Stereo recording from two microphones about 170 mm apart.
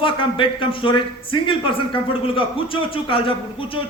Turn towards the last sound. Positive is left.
turn(degrees=30)  # may be behind; listen again after turning